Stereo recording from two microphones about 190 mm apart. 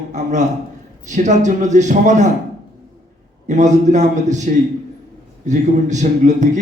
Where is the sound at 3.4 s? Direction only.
40° right (ahead or behind).